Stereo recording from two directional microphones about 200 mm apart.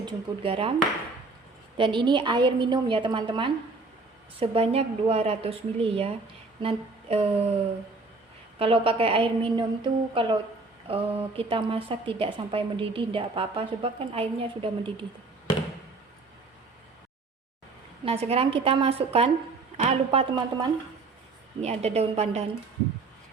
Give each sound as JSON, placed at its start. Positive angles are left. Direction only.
{"t": 0.0, "sound": "a woman's voice", "side_deg": -25}
{"t": 1.7, "sound": "a woman's voice", "side_deg": -25}
{"t": 6.6, "sound": "a sound", "side_deg": -30}
{"t": 8.5, "sound": "a woman's voice", "side_deg": -30}
{"t": 18.0, "sound": "a woman's voice", "side_deg": -30}